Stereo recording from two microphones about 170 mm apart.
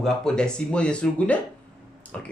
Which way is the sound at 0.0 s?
5° left (ahead or behind).